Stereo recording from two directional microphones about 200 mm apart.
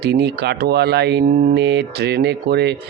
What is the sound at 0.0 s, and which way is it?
Speech, 55° right (ahead or behind).